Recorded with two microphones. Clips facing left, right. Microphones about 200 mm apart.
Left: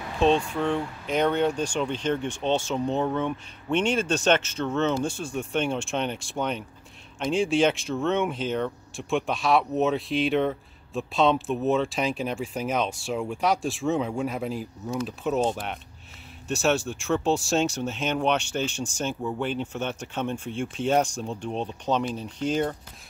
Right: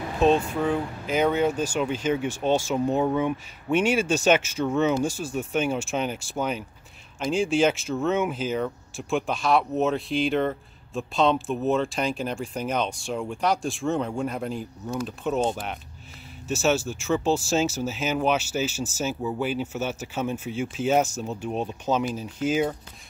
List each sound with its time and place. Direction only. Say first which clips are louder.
0.2 s speech: right 1 dB; 5° right (ahead or behind)